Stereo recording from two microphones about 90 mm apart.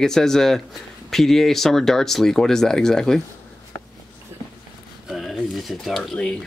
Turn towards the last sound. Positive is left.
turn(degrees=5)  # may be behind; listen again after turning